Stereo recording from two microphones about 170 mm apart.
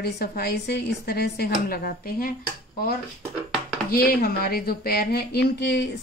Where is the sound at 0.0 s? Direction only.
65° left (ahead or behind).